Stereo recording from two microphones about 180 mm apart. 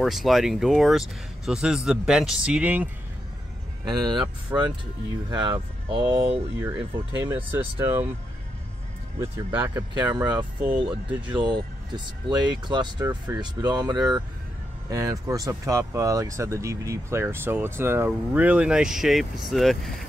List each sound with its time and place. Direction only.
0.0 s speech: centre (ahead or behind)
3.8 s speech: 20° right (ahead or behind)
5.3 s speech: 25° right (ahead or behind)
7.2 s speech: 10° right (ahead or behind)
9.2 s speech: 15° right (ahead or behind)
10.1 s speech: 20° right (ahead or behind); by 20.0 s centre (ahead or behind)